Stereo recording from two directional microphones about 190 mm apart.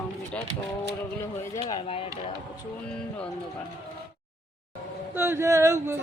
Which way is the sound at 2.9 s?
5° left (ahead or behind).